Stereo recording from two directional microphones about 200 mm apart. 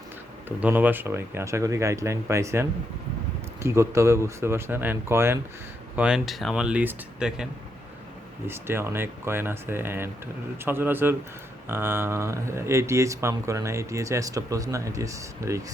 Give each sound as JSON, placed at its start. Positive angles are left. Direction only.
{"t": 0.4, "sound": "speech", "side_deg": -10}
{"t": 8.4, "sound": "speech", "side_deg": -10}